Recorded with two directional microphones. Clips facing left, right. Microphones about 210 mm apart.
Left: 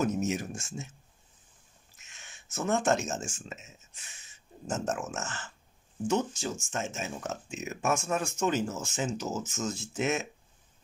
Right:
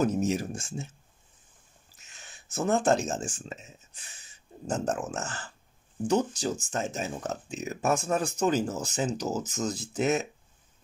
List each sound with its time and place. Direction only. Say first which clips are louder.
0.0 s speech: right 3 dB; 35° right (ahead or behind)
2.0 s speech: right 2 dB; 35° right (ahead or behind)